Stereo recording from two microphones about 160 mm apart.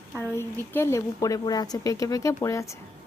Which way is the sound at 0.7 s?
15° left (ahead or behind).